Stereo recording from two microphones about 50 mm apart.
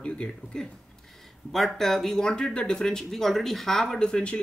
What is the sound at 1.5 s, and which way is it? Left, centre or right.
Speech, centre.